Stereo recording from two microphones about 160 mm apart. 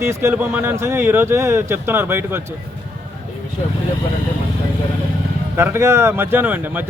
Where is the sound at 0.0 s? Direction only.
15° right (ahead or behind).